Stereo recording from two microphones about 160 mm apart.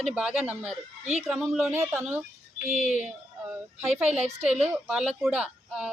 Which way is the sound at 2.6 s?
45° left (ahead or behind).